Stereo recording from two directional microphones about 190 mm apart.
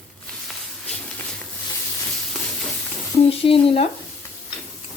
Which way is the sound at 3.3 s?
30° left (ahead or behind).